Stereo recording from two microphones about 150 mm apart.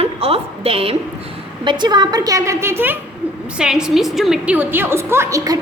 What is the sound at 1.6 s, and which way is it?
A woman's voice, 30° right (ahead or behind).